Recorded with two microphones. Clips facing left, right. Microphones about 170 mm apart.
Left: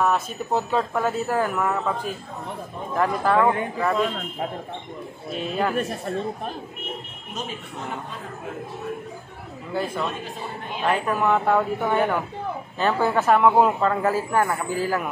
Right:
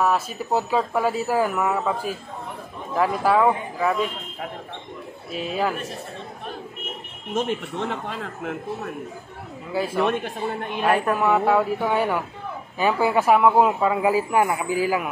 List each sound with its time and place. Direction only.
0.0 s a man's voice: 5° right (ahead or behind)
5.3 s speech: 5° right (ahead or behind)
7.3 s speech: 80° right
9.7 s speech: 5° right (ahead or behind)
9.9 s a man's voice: 65° right (ahead or behind)
11.1 s a man's voice: 5° right (ahead or behind)